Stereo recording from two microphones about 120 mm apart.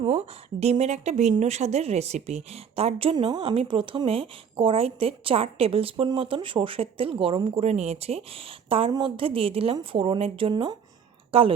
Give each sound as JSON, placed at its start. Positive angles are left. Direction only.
{"t": 0.0, "sound": "a woman's voice", "side_deg": -60}
{"t": 10.5, "sound": "speech", "side_deg": -35}
{"t": 11.3, "sound": "speech", "side_deg": -50}